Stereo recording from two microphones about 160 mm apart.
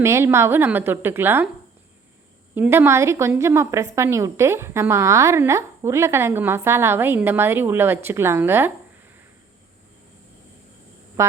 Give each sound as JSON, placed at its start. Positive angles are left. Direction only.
{"t": 0.0, "sound": "a woman's voice", "side_deg": -15}
{"t": 2.6, "sound": "a woman's voice", "side_deg": -15}
{"t": 11.2, "sound": "a sound", "side_deg": -15}